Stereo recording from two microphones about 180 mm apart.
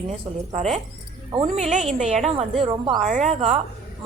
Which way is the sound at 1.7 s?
40° right (ahead or behind).